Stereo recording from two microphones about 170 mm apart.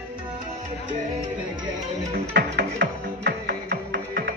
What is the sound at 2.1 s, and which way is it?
Music, 60° right (ahead or behind).